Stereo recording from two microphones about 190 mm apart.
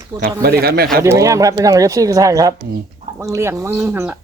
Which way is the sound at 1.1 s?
15° right (ahead or behind).